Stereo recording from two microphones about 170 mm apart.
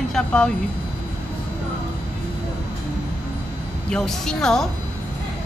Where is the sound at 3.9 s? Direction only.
5° left (ahead or behind).